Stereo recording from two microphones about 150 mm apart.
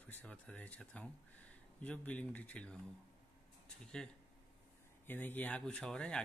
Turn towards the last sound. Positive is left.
turn(degrees=5)  # may be behind; listen again after turning